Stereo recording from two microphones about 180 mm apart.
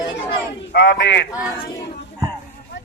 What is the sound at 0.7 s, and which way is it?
Speech, 75° left (ahead or behind).